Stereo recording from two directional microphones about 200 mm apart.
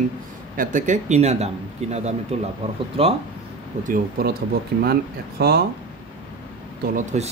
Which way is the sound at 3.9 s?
50° right (ahead or behind).